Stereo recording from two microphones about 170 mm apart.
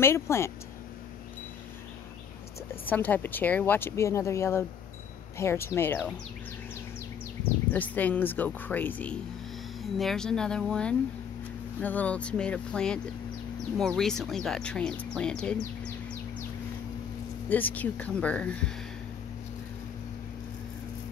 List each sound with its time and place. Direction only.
0.0 s speech: 15° left (ahead or behind)
2.9 s speech: 10° left (ahead or behind)
7.7 s speech: 10° left (ahead or behind)
17.5 s speech: 10° left (ahead or behind)